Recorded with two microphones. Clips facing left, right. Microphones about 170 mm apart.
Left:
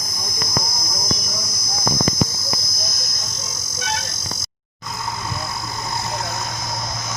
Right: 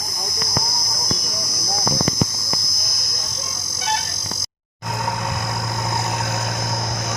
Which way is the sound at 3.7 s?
30° right (ahead or behind).